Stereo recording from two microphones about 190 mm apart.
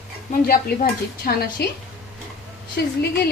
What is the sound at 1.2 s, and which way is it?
Speech, 50° left (ahead or behind).